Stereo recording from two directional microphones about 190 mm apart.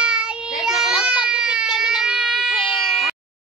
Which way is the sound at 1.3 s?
5° right (ahead or behind).